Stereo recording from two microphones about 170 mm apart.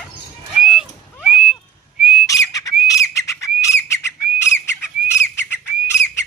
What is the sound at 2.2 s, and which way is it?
Whistle, 20° left (ahead or behind).